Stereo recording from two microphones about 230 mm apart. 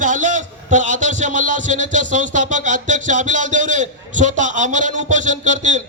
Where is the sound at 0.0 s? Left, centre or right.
Right.